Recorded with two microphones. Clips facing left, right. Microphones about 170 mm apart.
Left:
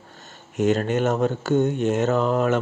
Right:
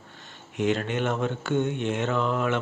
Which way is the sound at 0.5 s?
40° left (ahead or behind).